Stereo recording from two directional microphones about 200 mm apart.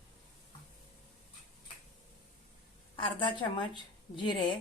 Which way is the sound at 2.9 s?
25° left (ahead or behind).